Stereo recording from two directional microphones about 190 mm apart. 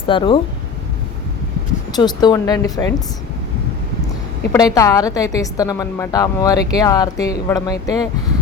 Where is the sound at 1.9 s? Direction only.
20° left (ahead or behind).